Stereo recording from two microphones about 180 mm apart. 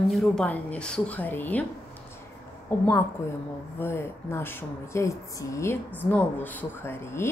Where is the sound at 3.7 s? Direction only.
15° left (ahead or behind).